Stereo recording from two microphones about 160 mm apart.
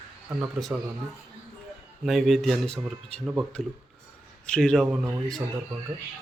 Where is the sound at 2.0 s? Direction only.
Centre (ahead or behind).